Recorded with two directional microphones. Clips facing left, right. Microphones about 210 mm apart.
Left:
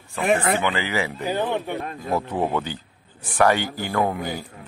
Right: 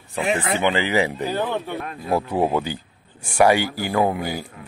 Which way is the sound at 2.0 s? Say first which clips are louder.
Right 4 dB; 10° right (ahead or behind).